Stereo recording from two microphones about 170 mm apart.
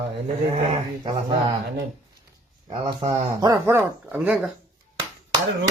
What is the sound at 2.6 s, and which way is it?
Speech, 30° right (ahead or behind).